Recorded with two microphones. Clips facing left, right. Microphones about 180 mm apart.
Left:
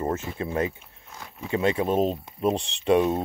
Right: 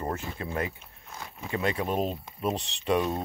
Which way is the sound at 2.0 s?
35° left (ahead or behind).